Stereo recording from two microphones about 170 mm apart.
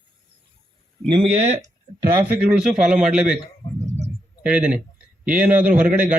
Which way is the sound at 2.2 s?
5° right (ahead or behind).